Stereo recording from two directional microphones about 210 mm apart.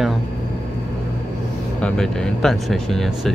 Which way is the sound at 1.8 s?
5° left (ahead or behind).